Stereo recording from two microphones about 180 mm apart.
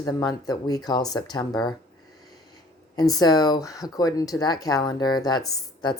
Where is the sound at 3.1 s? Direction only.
20° left (ahead or behind).